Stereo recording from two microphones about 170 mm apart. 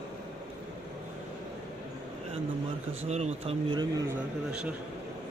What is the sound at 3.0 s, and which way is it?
Speech, 40° right (ahead or behind).